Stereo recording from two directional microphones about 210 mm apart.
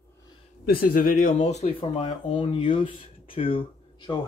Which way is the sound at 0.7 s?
45° left (ahead or behind).